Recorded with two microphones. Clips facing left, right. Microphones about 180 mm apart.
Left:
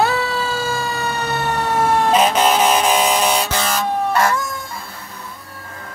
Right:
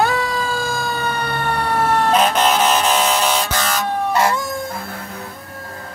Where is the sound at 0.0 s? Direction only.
5° left (ahead or behind).